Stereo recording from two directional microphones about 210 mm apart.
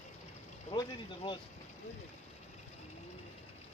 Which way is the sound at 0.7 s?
20° left (ahead or behind).